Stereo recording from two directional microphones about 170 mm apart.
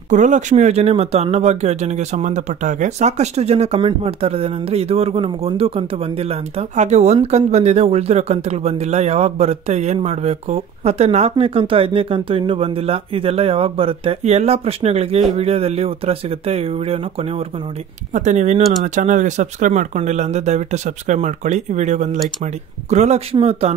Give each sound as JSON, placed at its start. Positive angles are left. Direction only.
{"t": 0.1, "sound": "speech", "side_deg": -45}
{"t": 18.1, "sound": "speech", "side_deg": -45}